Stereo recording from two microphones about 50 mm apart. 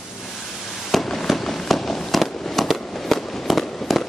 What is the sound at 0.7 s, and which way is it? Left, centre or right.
Fireworks, centre.